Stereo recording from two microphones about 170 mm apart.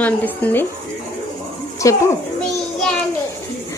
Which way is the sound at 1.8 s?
20° left (ahead or behind).